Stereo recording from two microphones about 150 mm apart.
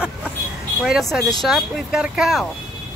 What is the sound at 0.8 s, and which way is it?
Speech, centre (ahead or behind).